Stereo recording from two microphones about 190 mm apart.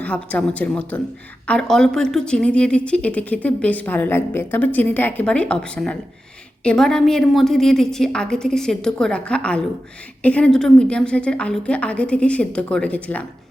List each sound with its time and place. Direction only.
0.0 s a woman's voice: 5° left (ahead or behind)